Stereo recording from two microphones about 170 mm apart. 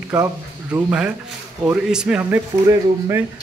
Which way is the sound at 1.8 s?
5° right (ahead or behind).